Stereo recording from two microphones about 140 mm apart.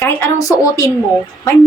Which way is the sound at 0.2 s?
25° left (ahead or behind).